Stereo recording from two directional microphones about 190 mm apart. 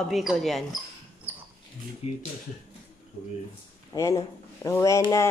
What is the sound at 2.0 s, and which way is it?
Speech, 35° left (ahead or behind).